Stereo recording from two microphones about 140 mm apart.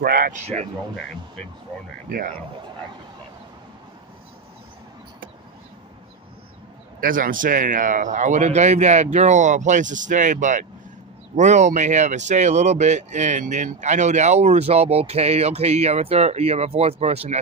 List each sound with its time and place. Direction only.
0.0 s speech: 90° right
7.0 s speech: 80° right; by 17.4 s 50° right (ahead or behind)